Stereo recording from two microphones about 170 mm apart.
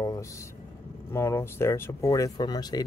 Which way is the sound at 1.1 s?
15° left (ahead or behind).